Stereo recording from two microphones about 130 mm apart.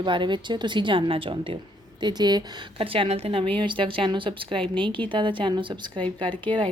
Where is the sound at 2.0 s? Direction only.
35° right (ahead or behind).